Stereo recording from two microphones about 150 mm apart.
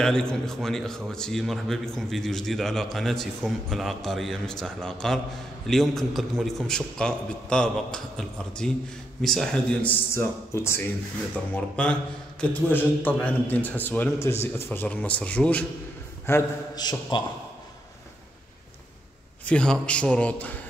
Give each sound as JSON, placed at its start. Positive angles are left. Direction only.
{"t": 0.0, "sound": "a man's voice", "side_deg": 5}
{"t": 16.8, "sound": "a man's voice", "side_deg": 30}
{"t": 19.4, "sound": "a man's voice", "side_deg": 5}